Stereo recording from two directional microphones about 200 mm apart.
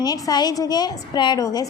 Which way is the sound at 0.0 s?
20° left (ahead or behind).